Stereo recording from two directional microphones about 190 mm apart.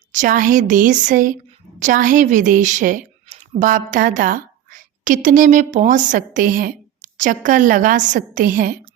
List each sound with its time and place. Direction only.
0.1 s a woman's voice: 45° right (ahead or behind)